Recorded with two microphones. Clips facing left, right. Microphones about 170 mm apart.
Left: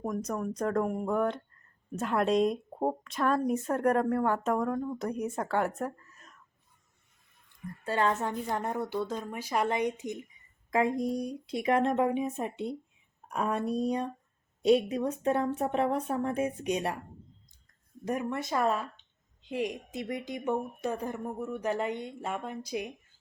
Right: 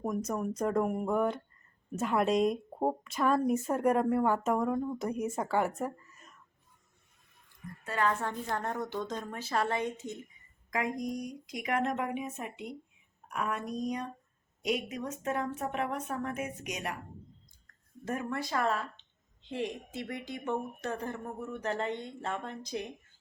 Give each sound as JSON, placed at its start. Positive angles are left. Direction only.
{"t": 0.0, "sound": "a woman's voice", "side_deg": -5}
{"t": 7.9, "sound": "speech", "side_deg": 30}
{"t": 10.7, "sound": "speech", "side_deg": 30}
{"t": 18.0, "sound": "speech", "side_deg": 15}